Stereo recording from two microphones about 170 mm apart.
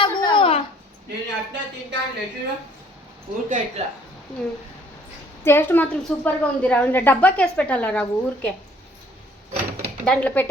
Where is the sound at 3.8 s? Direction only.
40° right (ahead or behind).